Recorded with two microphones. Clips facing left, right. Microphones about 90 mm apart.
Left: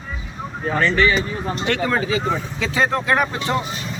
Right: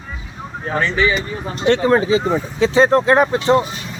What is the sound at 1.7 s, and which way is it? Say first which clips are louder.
Speech: right 8 dB; 30° right (ahead or behind).